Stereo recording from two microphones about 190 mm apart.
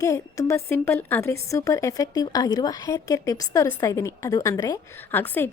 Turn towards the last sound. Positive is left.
turn(degrees=10)  # may be behind; listen again after turning